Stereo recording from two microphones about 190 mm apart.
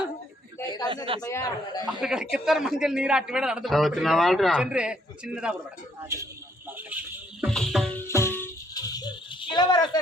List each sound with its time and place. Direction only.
1.2 s speech: 20° left (ahead or behind)
2.0 s a man's voice: 5° right (ahead or behind)
6.0 s speech: 15° right (ahead or behind)
6.7 s a sound: 10° right (ahead or behind)
7.4 s music: centre (ahead or behind)
8.0 s music: 15° left (ahead or behind)